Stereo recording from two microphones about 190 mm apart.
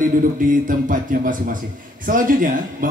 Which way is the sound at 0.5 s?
45° right (ahead or behind).